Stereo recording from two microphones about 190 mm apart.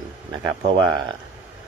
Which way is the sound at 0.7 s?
25° right (ahead or behind).